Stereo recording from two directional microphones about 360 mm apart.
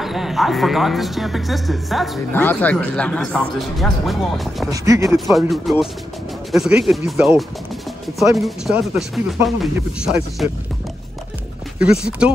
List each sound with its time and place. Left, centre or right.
0.0 s speech: centre
11.8 s speech: centre